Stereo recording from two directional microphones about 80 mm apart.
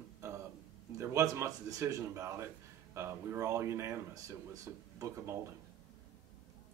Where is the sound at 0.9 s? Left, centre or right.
Right.